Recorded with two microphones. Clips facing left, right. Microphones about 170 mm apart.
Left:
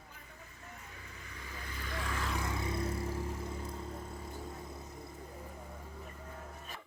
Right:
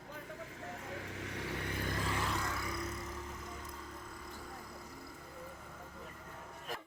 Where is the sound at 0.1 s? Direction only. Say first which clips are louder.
Right 9 dB; 85° right; by 1.8 s 70° right (ahead or behind).